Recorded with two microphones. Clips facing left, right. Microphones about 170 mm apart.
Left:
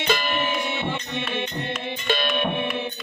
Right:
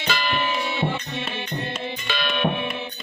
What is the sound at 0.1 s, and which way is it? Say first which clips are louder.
Music: left 1 dB; 50° left (ahead or behind).